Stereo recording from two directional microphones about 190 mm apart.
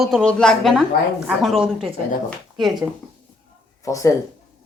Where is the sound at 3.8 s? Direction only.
15° left (ahead or behind).